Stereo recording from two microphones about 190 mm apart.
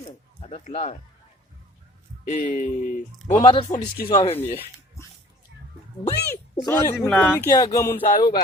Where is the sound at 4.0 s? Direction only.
55° left (ahead or behind).